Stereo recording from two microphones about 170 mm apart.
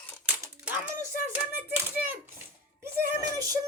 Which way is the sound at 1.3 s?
10° right (ahead or behind).